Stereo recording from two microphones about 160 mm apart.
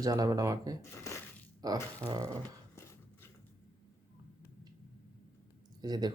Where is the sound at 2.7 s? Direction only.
15° left (ahead or behind).